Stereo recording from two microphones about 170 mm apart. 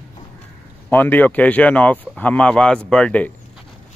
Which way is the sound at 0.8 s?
10° left (ahead or behind).